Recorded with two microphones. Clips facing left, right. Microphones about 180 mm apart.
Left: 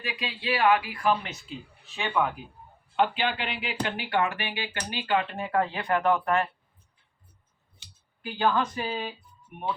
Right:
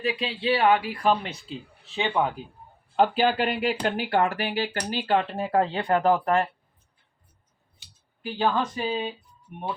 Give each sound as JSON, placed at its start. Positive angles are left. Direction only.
{"t": 0.0, "sound": "speech", "side_deg": -30}
{"t": 8.4, "sound": "speech", "side_deg": -25}